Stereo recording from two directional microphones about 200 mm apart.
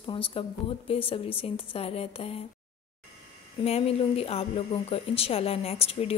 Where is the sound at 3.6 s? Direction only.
30° left (ahead or behind).